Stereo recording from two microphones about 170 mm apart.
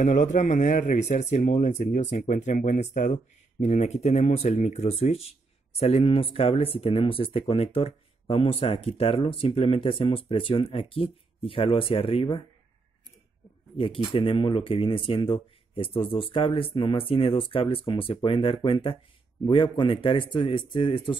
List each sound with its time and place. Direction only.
0.0 s speech: 45° left (ahead or behind)
13.7 s speech: 30° left (ahead or behind)